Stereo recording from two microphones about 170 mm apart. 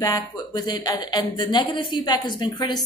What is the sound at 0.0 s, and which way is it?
Speech, 20° left (ahead or behind).